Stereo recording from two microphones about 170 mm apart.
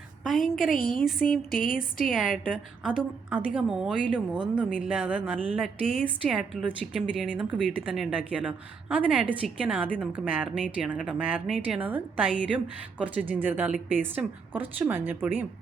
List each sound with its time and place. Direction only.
0.3 s a woman's voice: centre (ahead or behind)
0.7 s speech: 55° left (ahead or behind)
2.1 s a woman's voice: 5° right (ahead or behind)